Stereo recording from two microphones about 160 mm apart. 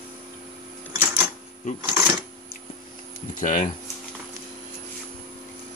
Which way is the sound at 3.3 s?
55° left (ahead or behind).